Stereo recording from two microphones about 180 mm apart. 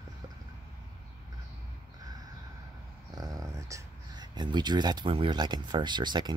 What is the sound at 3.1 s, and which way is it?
Speech, 20° right (ahead or behind).